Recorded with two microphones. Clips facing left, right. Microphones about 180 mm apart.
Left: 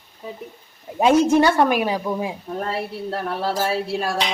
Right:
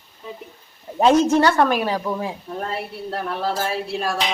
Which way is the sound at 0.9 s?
10° left (ahead or behind).